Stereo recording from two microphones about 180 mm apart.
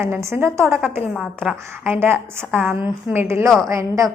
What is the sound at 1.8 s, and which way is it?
A woman's voice, 10° right (ahead or behind).